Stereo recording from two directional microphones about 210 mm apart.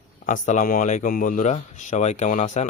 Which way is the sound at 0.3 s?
35° left (ahead or behind).